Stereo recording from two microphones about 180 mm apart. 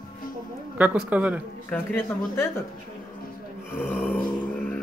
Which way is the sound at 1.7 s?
10° left (ahead or behind).